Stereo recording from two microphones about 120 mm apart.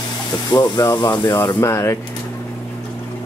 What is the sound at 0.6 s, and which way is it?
Speech, 35° left (ahead or behind).